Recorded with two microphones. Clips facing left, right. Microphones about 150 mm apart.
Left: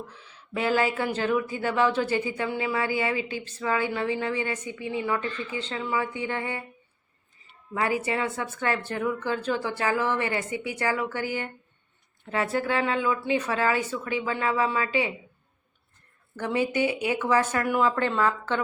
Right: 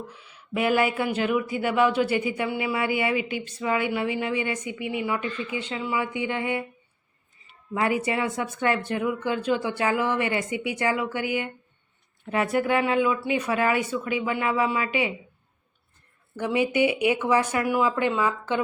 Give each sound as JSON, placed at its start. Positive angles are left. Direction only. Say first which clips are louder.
{"t": 0.1, "sound": "speech", "louder": "right 3 dB", "side_deg": -10}
{"t": 7.7, "sound": "speech", "louder": "right 2 dB", "side_deg": -20}
{"t": 16.3, "sound": "speech", "louder": "right 2 dB", "side_deg": -15}